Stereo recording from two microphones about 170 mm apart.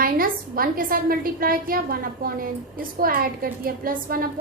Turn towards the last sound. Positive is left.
turn(degrees=-60)  # may be behind; listen again after turning